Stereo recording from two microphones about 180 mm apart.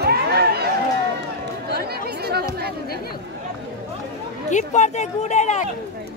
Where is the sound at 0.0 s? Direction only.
60° right (ahead or behind).